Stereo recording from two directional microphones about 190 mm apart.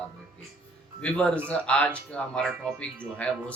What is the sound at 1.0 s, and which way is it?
Speech, 5° left (ahead or behind).